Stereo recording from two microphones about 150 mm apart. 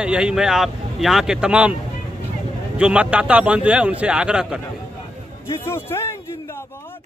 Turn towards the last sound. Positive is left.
turn(degrees=15)  # may be behind; listen again after turning